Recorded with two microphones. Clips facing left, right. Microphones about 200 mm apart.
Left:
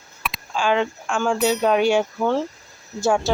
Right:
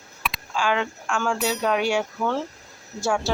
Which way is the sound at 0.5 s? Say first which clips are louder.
Left 4 dB; 25° left (ahead or behind).